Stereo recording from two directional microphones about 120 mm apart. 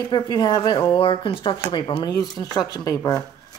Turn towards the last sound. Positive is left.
turn(degrees=30)  # may be behind; listen again after turning